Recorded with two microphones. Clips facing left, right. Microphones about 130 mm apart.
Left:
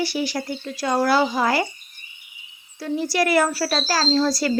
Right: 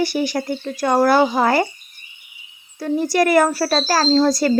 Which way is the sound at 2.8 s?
45° right (ahead or behind).